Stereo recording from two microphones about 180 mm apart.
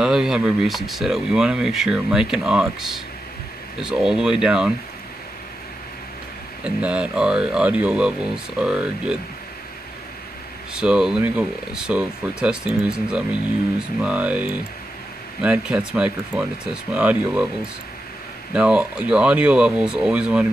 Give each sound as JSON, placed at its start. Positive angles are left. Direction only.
{"t": 0.0, "sound": "speech", "side_deg": -5}
{"t": 6.6, "sound": "speech", "side_deg": -5}
{"t": 10.7, "sound": "speech", "side_deg": -5}
{"t": 18.5, "sound": "speech", "side_deg": -5}